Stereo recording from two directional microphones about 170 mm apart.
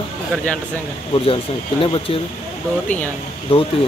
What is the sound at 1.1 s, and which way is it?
Speech, 35° left (ahead or behind).